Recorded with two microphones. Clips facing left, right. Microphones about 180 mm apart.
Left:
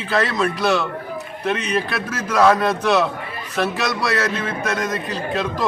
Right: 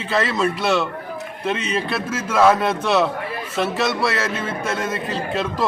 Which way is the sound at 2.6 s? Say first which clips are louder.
Left 1 dB; 25° right (ahead or behind).